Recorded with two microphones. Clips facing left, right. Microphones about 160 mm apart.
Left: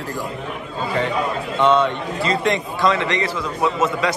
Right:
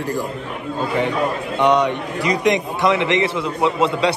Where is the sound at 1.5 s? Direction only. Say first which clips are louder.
Even; 15° right (ahead or behind).